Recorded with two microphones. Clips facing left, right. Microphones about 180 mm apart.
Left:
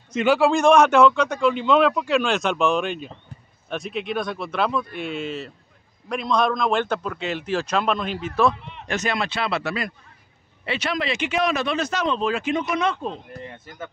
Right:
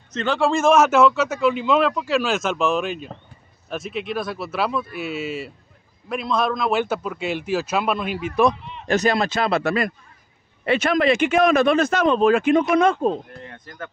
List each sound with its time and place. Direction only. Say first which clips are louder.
0.1 s a man's voice: left 2 dB; 10° left (ahead or behind); by 8.3 s 10° right (ahead or behind)
8.8 s speech: right 6 dB; 35° right (ahead or behind)
13.4 s speech: left 1 dB; 5° left (ahead or behind)